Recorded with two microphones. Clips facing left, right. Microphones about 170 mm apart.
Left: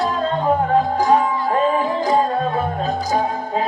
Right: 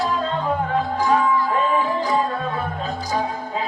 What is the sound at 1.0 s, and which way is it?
Music, 40° left (ahead or behind).